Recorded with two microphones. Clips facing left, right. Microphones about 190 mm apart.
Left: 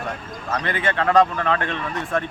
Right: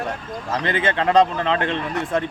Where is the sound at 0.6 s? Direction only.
20° right (ahead or behind).